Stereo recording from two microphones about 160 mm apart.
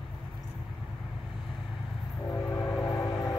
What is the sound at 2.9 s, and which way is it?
Vehicle, 25° left (ahead or behind).